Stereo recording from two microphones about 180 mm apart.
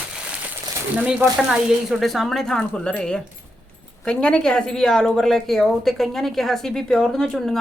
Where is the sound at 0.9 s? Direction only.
5° right (ahead or behind).